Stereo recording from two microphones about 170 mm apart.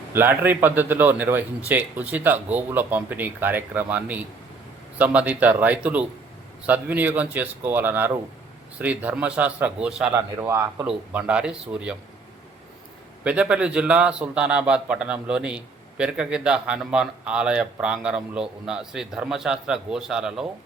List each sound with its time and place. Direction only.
0.1 s a man's voice: 10° right (ahead or behind)
10.2 s a man's voice: 15° right (ahead or behind)
13.2 s a man's voice: 5° right (ahead or behind)